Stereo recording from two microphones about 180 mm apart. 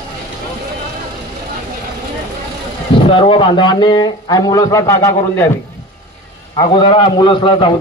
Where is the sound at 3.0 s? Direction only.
30° left (ahead or behind).